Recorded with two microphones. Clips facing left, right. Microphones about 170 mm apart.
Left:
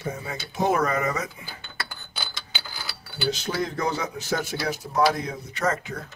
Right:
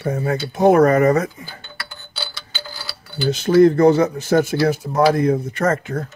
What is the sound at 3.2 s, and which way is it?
Speech, 50° right (ahead or behind).